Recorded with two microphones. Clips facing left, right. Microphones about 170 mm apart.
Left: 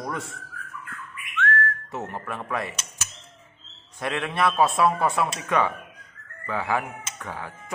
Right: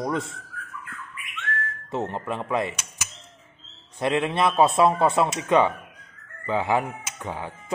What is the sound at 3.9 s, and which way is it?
A man's voice, 25° right (ahead or behind).